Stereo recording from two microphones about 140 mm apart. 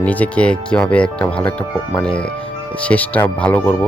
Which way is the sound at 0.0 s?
10° left (ahead or behind).